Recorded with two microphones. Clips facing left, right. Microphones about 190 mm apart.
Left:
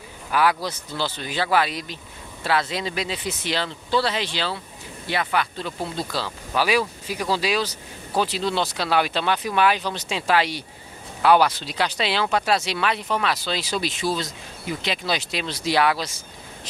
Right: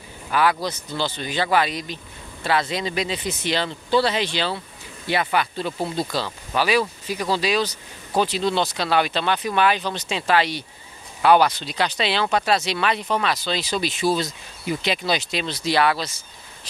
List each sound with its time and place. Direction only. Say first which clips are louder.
0.3 s a man's voice: right 1 dB; 10° left (ahead or behind)
5.9 s speech: right 3 dB; 5° left (ahead or behind)